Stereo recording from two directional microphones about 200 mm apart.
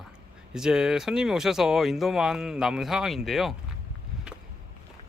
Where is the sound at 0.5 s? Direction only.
5° right (ahead or behind).